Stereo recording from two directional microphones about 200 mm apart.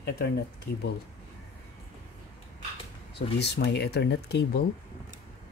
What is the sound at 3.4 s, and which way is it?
Speech, 55° left (ahead or behind).